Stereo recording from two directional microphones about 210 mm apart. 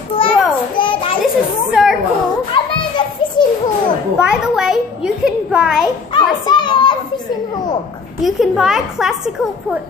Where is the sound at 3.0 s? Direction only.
20° left (ahead or behind).